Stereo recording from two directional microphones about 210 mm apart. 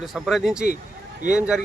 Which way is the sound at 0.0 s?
Centre (ahead or behind).